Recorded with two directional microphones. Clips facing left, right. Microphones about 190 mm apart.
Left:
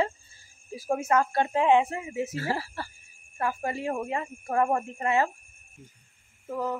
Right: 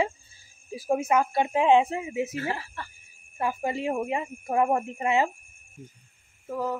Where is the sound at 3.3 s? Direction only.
20° right (ahead or behind).